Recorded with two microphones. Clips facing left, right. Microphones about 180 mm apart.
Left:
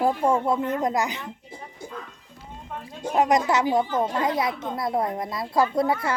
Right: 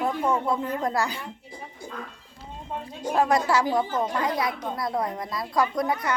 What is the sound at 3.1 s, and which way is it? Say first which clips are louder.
Speech: left 1 dB; 20° left (ahead or behind).